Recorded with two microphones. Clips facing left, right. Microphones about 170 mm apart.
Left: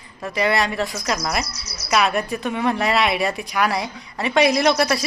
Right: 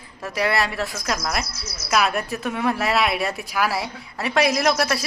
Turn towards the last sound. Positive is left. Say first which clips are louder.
# left 3 dB
turn(degrees=0)  # may be behind; listen again after turning